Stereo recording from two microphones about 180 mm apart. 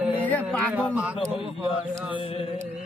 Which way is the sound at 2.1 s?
30° left (ahead or behind).